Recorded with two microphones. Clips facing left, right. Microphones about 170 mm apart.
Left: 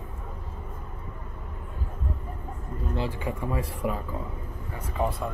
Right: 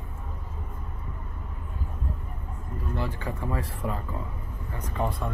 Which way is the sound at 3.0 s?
15° left (ahead or behind).